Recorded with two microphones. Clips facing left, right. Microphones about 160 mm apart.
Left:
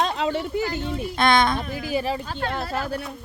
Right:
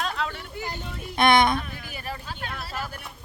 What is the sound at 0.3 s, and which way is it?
Speech, 90° left.